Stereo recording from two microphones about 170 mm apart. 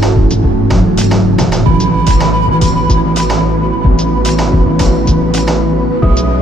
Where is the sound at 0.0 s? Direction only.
Centre (ahead or behind).